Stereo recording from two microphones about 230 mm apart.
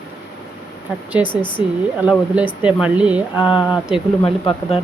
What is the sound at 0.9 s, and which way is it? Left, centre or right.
Speech, centre.